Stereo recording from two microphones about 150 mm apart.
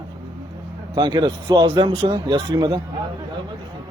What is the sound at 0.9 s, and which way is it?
A man's voice, 30° right (ahead or behind).